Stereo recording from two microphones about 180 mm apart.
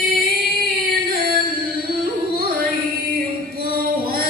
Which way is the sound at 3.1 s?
55° right (ahead or behind).